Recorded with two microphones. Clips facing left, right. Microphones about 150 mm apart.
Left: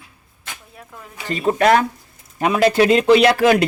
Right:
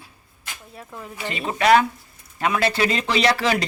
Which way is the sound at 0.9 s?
5° right (ahead or behind).